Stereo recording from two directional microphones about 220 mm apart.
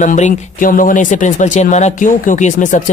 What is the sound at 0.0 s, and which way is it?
Speech, 35° left (ahead or behind).